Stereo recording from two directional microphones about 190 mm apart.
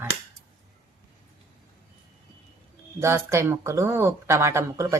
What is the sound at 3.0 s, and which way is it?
Speech, 15° right (ahead or behind).